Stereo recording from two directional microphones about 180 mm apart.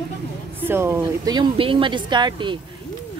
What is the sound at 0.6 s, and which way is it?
A woman's voice, 10° right (ahead or behind).